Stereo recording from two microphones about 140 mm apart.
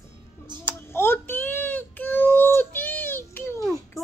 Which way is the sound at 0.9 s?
15° left (ahead or behind).